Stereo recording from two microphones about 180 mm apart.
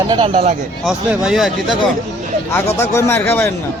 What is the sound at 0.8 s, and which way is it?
Speech, 5° right (ahead or behind).